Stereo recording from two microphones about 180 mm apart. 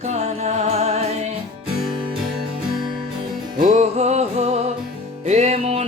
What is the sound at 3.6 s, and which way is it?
Music, 45° right (ahead or behind).